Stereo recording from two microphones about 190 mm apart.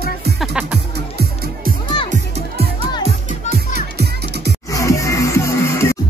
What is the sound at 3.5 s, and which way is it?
Music, 55° right (ahead or behind).